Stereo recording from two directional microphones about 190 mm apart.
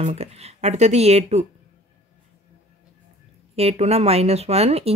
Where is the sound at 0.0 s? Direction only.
35° right (ahead or behind).